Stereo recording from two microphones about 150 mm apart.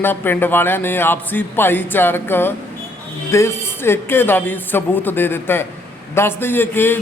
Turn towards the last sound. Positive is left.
turn(degrees=15)  # may be behind; listen again after turning